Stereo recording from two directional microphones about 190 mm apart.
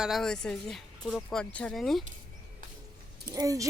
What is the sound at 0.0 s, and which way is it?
Speech, centre (ahead or behind).